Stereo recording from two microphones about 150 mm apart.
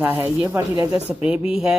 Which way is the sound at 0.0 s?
15° right (ahead or behind).